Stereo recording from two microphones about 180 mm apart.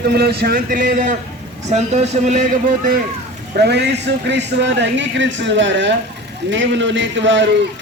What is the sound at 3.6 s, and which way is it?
A man's voice, 70° right (ahead or behind).